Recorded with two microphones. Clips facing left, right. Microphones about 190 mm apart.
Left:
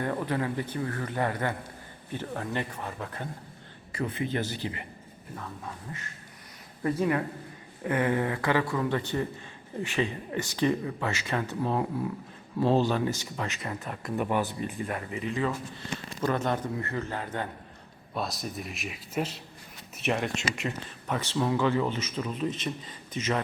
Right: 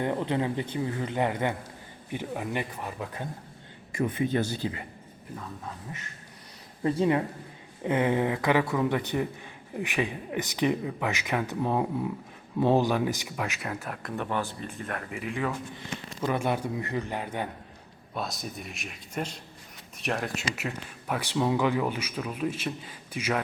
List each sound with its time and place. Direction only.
0.0 s speech: 20° right (ahead or behind)
5.9 s speech: 20° right (ahead or behind); by 14.3 s centre (ahead or behind)
14.3 s speech: 15° left (ahead or behind)
14.8 s speech: centre (ahead or behind)
18.1 s speech: centre (ahead or behind)